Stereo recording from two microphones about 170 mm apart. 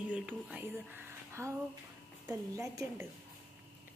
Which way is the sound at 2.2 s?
20° right (ahead or behind).